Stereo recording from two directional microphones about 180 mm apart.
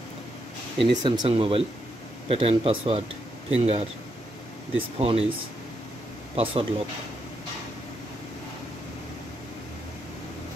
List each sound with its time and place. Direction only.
0.7 s speech: 25° right (ahead or behind)
6.3 s speech: 30° right (ahead or behind)